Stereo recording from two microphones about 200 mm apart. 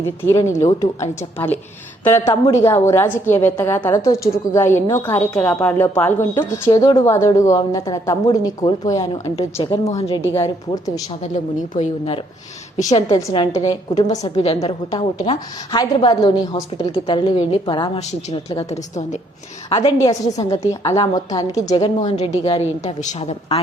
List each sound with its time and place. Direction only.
0.2 s a woman's voice: 15° left (ahead or behind); by 10.2 s 30° left (ahead or behind)
10.3 s a woman's voice: 15° left (ahead or behind)
11.2 s a woman's voice: 40° left (ahead or behind)
12.8 s a woman's voice: 15° left (ahead or behind)
14.3 s a woman's voice: 30° left (ahead or behind)
20.5 s a woman's voice: 15° left (ahead or behind)
21.8 s a woman's voice: 35° left (ahead or behind)